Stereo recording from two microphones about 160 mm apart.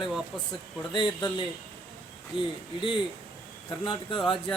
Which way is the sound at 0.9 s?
30° left (ahead or behind).